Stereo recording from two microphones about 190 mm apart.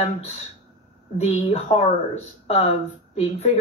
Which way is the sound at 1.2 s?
35° left (ahead or behind).